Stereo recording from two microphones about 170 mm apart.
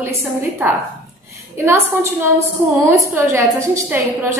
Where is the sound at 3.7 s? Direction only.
15° right (ahead or behind).